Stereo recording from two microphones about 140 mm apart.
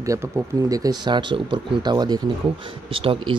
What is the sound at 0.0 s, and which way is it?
Speech, 25° right (ahead or behind).